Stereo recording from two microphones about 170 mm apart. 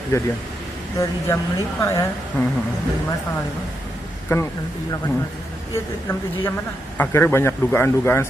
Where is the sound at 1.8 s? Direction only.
20° left (ahead or behind).